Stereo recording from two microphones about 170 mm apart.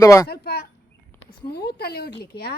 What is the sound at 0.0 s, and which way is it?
Speech, 20° left (ahead or behind).